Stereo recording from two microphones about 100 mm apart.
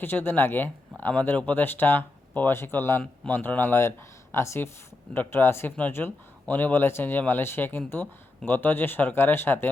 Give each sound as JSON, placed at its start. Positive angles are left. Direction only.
{"t": 0.0, "sound": "speech", "side_deg": 20}